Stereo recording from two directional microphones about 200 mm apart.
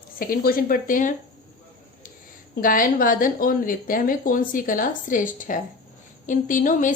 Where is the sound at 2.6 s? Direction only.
45° left (ahead or behind).